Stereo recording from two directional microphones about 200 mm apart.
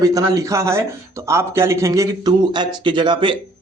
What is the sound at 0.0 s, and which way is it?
A man's voice, 15° right (ahead or behind).